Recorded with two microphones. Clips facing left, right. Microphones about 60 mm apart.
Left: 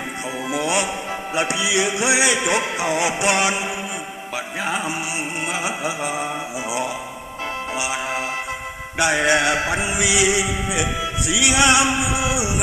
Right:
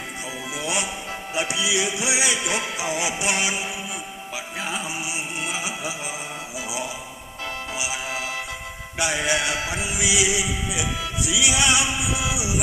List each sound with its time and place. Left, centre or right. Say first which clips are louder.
0.5 s music: left 6 dB; left
6.7 s speech: left 6 dB; left
7.8 s music: left 5 dB; left